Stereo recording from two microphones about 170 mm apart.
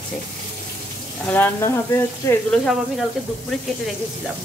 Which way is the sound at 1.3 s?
15° left (ahead or behind).